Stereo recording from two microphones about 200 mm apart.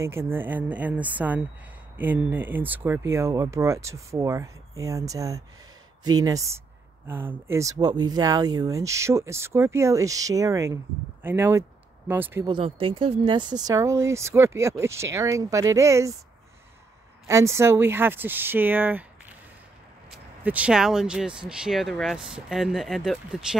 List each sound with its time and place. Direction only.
0.0 s speech: 15° right (ahead or behind)
12.4 s speech: 25° right (ahead or behind)
17.3 s speech: 15° right (ahead or behind)
20.4 s speech: 5° right (ahead or behind)